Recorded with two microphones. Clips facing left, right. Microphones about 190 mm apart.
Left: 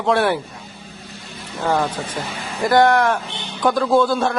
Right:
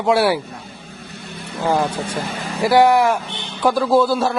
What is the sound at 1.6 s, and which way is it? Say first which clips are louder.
Speech: right 1 dB; 10° right (ahead or behind).